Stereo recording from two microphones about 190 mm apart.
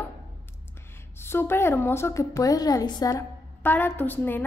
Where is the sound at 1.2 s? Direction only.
10° left (ahead or behind).